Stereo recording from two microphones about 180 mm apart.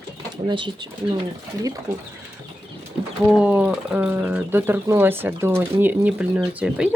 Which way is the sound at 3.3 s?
5° right (ahead or behind).